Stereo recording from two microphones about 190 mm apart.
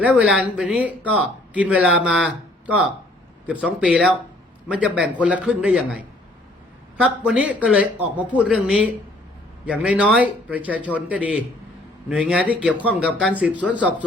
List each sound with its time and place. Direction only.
0.0 s a man's voice: 5° right (ahead or behind)